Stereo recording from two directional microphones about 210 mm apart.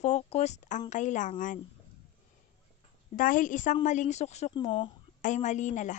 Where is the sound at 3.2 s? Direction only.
40° left (ahead or behind); by 4.9 s 20° left (ahead or behind).